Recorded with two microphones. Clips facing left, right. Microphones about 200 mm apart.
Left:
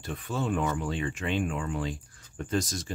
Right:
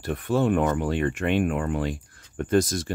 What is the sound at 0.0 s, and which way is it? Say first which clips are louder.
Speech: right 9 dB; 65° right (ahead or behind).